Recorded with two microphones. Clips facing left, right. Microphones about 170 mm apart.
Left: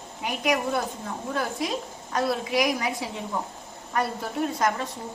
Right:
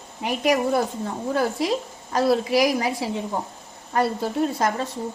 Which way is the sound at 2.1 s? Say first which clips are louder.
Right 5 dB; 30° right (ahead or behind).